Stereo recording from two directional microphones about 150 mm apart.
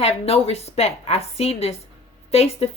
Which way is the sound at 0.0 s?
45° left (ahead or behind).